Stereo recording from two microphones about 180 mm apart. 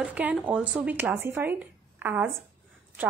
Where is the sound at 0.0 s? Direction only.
10° right (ahead or behind).